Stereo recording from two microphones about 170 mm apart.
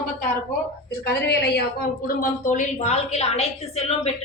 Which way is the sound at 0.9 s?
70° left (ahead or behind).